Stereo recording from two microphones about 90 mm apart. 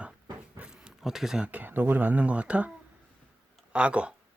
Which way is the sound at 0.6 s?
10° right (ahead or behind).